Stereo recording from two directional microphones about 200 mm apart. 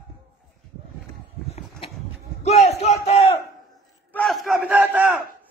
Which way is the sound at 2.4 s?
35° left (ahead or behind).